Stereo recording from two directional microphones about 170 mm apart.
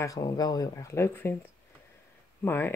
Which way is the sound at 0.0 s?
20° left (ahead or behind).